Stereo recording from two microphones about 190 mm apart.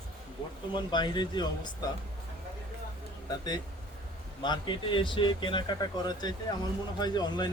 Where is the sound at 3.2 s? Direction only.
20° left (ahead or behind).